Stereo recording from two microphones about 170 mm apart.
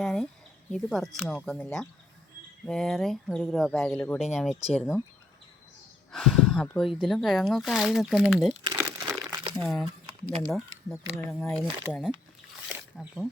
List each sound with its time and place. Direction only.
0.0 s a sound: 5° left (ahead or behind)
0.7 s speech: centre (ahead or behind)
6.1 s speech: centre (ahead or behind)
8.6 s crumpling: 25° right (ahead or behind)
9.6 s speech: 5° left (ahead or behind)